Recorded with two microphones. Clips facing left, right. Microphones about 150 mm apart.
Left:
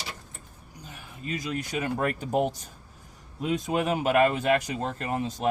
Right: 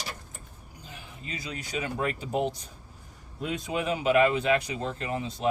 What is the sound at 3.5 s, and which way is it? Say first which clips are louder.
Speech: left 4 dB; 45° left (ahead or behind).